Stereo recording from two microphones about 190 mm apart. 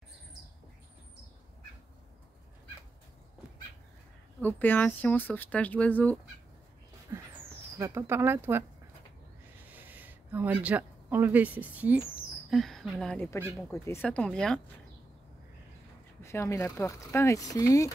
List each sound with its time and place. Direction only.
4.4 s speech: 10° left (ahead or behind)
7.1 s a sound: 15° right (ahead or behind)
7.8 s speech: 15° right (ahead or behind)
9.7 s speech: 10° right (ahead or behind)
16.2 s speech: 15° left (ahead or behind)